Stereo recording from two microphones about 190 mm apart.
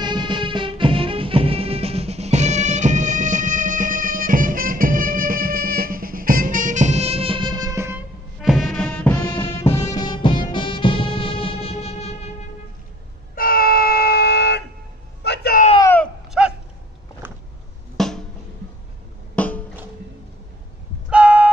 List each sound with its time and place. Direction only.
0.0 s music: 25° right (ahead or behind)
8.4 s music: centre (ahead or behind)
9.3 s music: 30° left (ahead or behind)
13.3 s a sound: 50° left (ahead or behind)
15.8 s a sound: 10° left (ahead or behind)
16.3 s dog: 5° right (ahead or behind)
17.9 s music: centre (ahead or behind)
19.3 s music: 5° left (ahead or behind)
21.1 s a sound: 5° right (ahead or behind)